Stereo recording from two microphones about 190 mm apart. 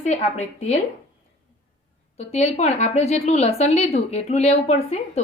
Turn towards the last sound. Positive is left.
turn(degrees=35)  # may be behind; listen again after turning